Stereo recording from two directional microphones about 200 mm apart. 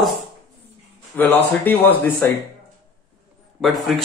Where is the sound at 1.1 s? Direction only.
10° left (ahead or behind).